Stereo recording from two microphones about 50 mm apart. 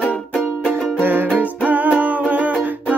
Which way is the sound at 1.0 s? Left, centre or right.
Right.